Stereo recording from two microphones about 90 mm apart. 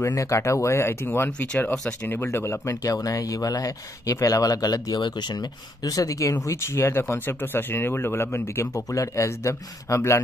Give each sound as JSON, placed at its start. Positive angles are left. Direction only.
{"t": 0.0, "sound": "speech", "side_deg": 35}